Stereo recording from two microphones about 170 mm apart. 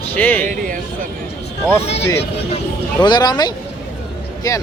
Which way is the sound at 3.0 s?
25° left (ahead or behind).